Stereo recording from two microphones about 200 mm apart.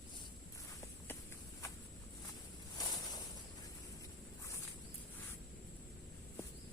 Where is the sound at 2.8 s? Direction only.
20° left (ahead or behind).